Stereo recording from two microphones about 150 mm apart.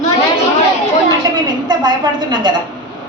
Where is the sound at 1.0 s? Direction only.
30° right (ahead or behind).